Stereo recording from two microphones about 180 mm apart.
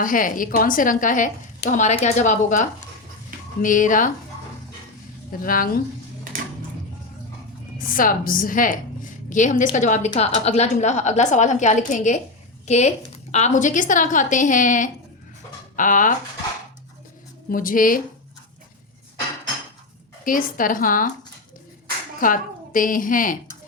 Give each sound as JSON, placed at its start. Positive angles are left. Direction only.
{"t": 0.0, "sound": "a woman's voice", "side_deg": 50}
{"t": 5.4, "sound": "a woman's voice", "side_deg": 50}
{"t": 7.8, "sound": "a woman's voice", "side_deg": 50}
{"t": 17.5, "sound": "a woman's voice", "side_deg": 50}
{"t": 20.2, "sound": "a woman's voice", "side_deg": 50}
{"t": 22.2, "sound": "a woman's voice", "side_deg": 50}